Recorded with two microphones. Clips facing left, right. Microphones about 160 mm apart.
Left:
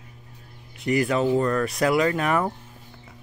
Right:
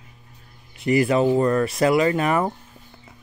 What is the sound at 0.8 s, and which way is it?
Speech, 5° right (ahead or behind).